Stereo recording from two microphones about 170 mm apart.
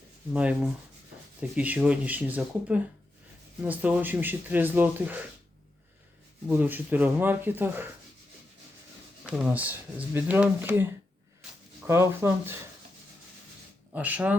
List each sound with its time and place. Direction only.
0.3 s speech: 5° right (ahead or behind)
6.5 s speech: 10° right (ahead or behind)
9.2 s speech: 10° right (ahead or behind)
11.9 s speech: 15° right (ahead or behind)
13.9 s speech: 10° right (ahead or behind)